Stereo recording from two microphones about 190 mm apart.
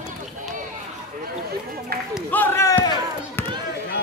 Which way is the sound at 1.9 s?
55° right (ahead or behind).